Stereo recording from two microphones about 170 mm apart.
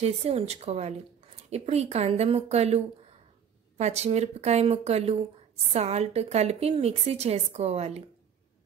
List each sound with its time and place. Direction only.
0.0 s a woman's voice: 40° right (ahead or behind)